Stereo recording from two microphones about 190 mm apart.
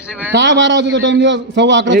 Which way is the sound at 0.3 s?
70° right (ahead or behind).